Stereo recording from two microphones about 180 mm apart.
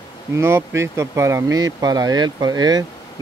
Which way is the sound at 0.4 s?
15° right (ahead or behind).